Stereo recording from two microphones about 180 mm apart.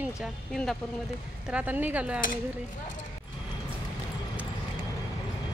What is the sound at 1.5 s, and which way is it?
Speech, 10° right (ahead or behind).